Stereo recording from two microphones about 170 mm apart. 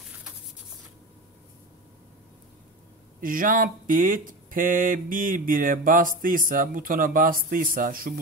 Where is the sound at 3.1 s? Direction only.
55° right (ahead or behind).